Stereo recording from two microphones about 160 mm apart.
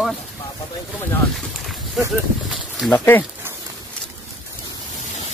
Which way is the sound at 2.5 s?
Centre (ahead or behind).